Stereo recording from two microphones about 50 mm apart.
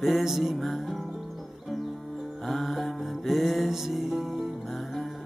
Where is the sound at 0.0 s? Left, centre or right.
Centre.